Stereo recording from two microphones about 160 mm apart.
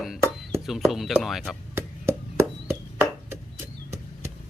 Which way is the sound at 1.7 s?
15° right (ahead or behind).